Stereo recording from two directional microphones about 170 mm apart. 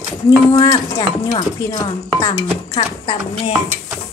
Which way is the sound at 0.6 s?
20° left (ahead or behind).